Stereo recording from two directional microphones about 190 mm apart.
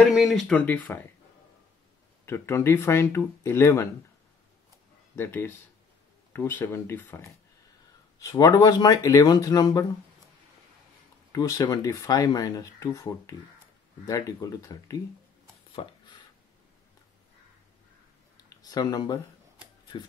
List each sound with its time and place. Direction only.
0.1 s speech: centre (ahead or behind)
2.2 s speech: 15° left (ahead or behind)
5.1 s speech: 10° left (ahead or behind)
11.3 s speech: 20° left (ahead or behind)
15.7 s a sound: 30° left (ahead or behind)
18.6 s speech: 20° left (ahead or behind)